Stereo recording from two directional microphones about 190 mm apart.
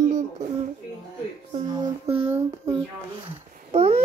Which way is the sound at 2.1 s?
35° right (ahead or behind).